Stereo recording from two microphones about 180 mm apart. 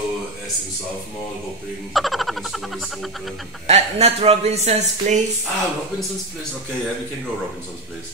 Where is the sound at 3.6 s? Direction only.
35° right (ahead or behind).